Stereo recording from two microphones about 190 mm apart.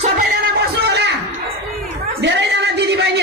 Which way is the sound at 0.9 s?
65° right (ahead or behind).